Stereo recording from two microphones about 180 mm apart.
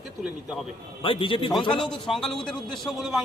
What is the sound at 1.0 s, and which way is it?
Speech, 30° left (ahead or behind).